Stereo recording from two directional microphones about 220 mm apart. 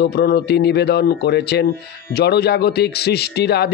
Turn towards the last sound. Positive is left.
turn(degrees=45)  # may be behind; listen again after turning